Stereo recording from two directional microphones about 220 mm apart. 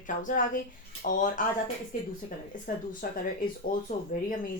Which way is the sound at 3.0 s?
40° left (ahead or behind).